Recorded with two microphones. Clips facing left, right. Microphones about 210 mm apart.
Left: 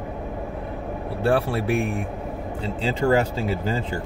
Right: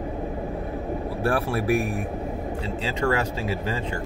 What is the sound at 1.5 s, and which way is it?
Speech, 25° left (ahead or behind).